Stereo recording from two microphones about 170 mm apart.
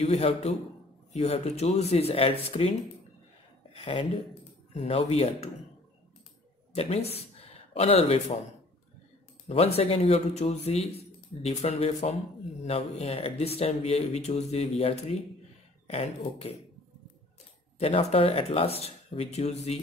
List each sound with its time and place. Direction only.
0.0 s speech: 40° left (ahead or behind)
3.7 s speech: 30° left (ahead or behind)
6.7 s speech: 35° left (ahead or behind)
9.8 s speech: 40° left (ahead or behind)
17.7 s speech: 35° left (ahead or behind)